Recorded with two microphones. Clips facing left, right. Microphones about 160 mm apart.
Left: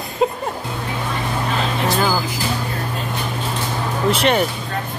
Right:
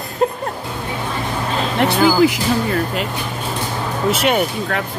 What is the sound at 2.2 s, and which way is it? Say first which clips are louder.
Speech: right 9 dB; 90° right.